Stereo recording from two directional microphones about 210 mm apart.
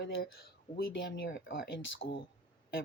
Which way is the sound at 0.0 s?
50° left (ahead or behind).